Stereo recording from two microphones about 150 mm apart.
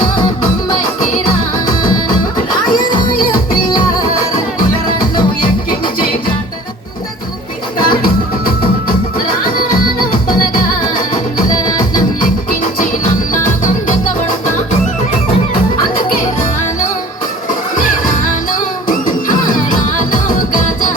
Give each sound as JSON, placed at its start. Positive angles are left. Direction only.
{"t": 7.9, "sound": "music", "side_deg": 70}
{"t": 10.2, "sound": "music", "side_deg": 65}
{"t": 16.0, "sound": "music", "side_deg": 65}
{"t": 17.7, "sound": "music", "side_deg": 60}